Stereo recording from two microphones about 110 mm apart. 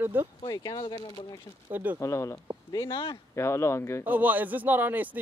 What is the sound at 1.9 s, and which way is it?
Speech, 25° left (ahead or behind).